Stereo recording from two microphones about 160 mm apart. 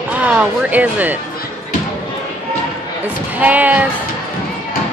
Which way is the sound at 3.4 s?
10° right (ahead or behind).